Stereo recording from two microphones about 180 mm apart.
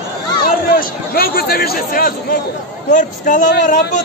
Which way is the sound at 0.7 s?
55° left (ahead or behind).